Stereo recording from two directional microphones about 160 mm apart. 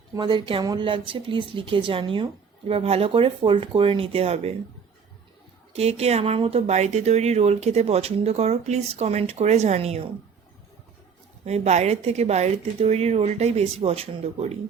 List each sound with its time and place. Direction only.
0.2 s speech: 30° right (ahead or behind)
5.7 s speech: 40° right (ahead or behind)
11.4 s speech: 45° right (ahead or behind)